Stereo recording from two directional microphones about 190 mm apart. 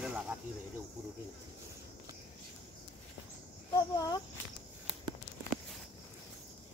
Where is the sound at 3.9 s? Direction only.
20° left (ahead or behind).